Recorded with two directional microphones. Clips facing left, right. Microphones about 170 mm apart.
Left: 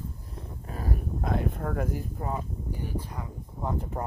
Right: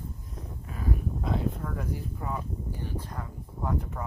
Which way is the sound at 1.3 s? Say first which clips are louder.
Left 3 dB; 55° left (ahead or behind).